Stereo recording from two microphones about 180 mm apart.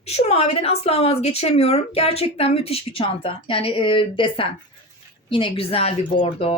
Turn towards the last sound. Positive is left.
turn(degrees=30)  # may be behind; listen again after turning